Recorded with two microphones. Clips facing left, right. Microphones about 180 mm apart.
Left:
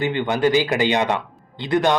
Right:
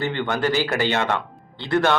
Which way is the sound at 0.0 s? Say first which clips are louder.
Left 4 dB; 15° left (ahead or behind).